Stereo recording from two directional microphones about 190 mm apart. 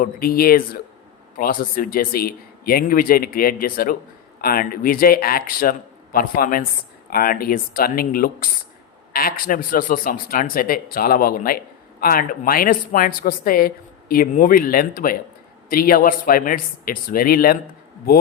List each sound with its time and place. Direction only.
0.0 s speech: 50° left (ahead or behind)